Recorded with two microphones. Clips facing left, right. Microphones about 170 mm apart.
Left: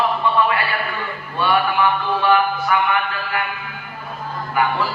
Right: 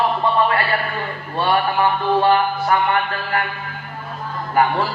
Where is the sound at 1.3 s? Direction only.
35° right (ahead or behind).